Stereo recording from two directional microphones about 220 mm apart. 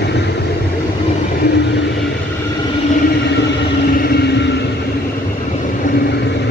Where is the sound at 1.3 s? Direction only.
45° left (ahead or behind).